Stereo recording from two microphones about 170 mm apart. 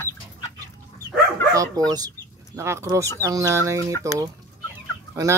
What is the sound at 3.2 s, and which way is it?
Speech, 20° right (ahead or behind).